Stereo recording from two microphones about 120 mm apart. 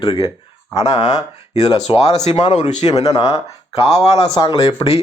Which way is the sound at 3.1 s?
30° left (ahead or behind).